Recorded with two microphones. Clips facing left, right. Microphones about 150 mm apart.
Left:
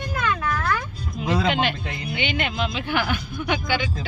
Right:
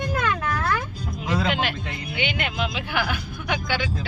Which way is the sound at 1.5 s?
5° right (ahead or behind).